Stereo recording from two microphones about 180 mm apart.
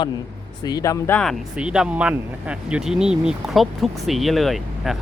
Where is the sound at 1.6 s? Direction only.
5° right (ahead or behind).